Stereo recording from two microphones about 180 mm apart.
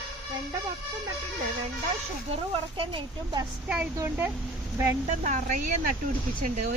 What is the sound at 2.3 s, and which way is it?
Speech, 30° right (ahead or behind).